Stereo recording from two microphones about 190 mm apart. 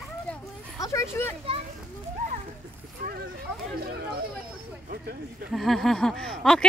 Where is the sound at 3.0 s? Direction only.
55° right (ahead or behind).